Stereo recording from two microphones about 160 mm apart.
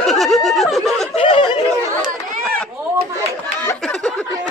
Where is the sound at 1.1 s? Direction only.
35° left (ahead or behind).